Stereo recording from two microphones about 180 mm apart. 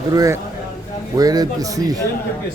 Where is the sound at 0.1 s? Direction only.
20° right (ahead or behind).